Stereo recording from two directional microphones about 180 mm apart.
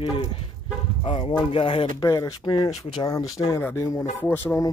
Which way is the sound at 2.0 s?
20° left (ahead or behind).